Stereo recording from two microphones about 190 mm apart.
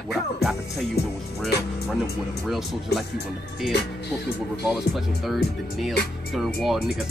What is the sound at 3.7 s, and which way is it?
Speech, 60° left (ahead or behind).